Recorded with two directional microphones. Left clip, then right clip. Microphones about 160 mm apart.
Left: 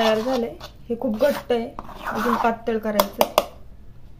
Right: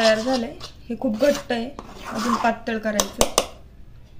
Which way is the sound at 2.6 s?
40° left (ahead or behind).